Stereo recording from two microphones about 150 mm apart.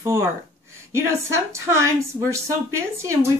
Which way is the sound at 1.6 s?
20° right (ahead or behind).